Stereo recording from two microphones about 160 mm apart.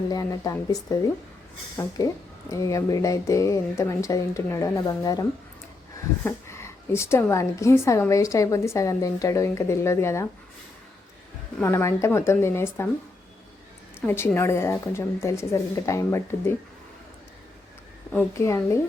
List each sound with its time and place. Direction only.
0.1 s a woman's voice: 20° left (ahead or behind)
6.2 s a woman's voice: 15° left (ahead or behind)
11.6 s a woman's voice: 15° left (ahead or behind)
14.1 s a woman's voice: 15° left (ahead or behind)
18.3 s a woman's voice: 20° left (ahead or behind)